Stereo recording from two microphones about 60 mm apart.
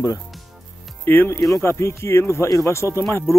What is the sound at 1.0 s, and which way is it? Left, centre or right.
Speech, left.